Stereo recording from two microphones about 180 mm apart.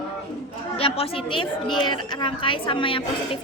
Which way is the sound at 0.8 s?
30° left (ahead or behind).